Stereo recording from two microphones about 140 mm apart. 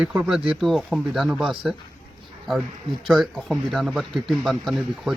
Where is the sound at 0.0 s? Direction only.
10° right (ahead or behind).